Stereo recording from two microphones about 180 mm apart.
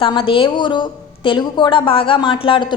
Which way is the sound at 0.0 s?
30° left (ahead or behind).